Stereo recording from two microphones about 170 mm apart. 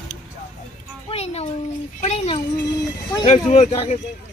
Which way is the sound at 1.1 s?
40° left (ahead or behind).